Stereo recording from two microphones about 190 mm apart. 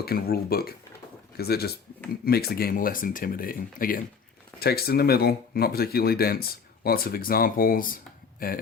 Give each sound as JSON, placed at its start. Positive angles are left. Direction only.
{"t": 0.0, "sound": "speech", "side_deg": 55}